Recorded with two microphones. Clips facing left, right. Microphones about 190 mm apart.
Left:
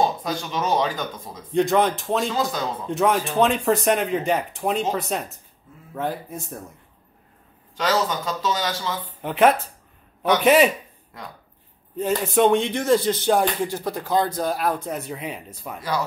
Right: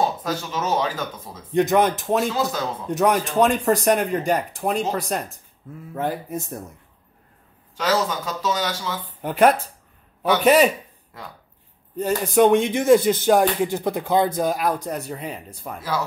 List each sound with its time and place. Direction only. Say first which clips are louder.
0.0 s speech: even; 5° right (ahead or behind)
1.6 s speech: right 1 dB; 20° right (ahead or behind)
2.1 s speech: right 1 dB; 5° right (ahead or behind)
7.7 s speech: even; 10° right (ahead or behind)
12.0 s speech: right 2 dB; centre (ahead or behind)
12.6 s speech: right 4 dB; 10° right (ahead or behind)
14.5 s speech: right 1 dB; centre (ahead or behind)